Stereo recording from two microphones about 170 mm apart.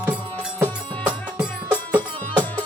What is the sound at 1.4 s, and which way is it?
Music, 10° right (ahead or behind).